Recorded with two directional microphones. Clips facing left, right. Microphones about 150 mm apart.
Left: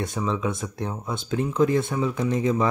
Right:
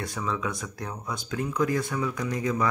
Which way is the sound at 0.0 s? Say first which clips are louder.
Left 4 dB; 20° left (ahead or behind).